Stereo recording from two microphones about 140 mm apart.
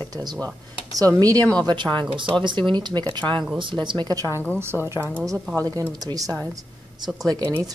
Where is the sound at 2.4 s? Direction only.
35° right (ahead or behind).